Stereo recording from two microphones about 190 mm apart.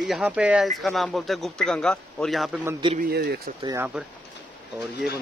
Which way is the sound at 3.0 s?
55° right (ahead or behind).